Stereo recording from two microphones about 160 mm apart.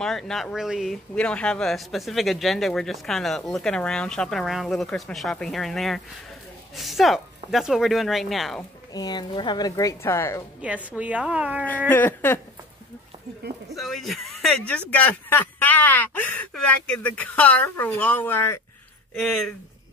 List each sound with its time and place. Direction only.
0.0 s speech: centre (ahead or behind)
8.9 s a woman's voice: 25° left (ahead or behind)
10.6 s a woman's voice: 10° right (ahead or behind)
11.9 s speech: 10° left (ahead or behind)
13.7 s speech: centre (ahead or behind)
19.1 s speech: centre (ahead or behind)